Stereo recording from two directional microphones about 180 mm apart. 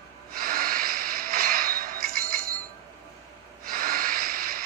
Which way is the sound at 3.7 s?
50° right (ahead or behind).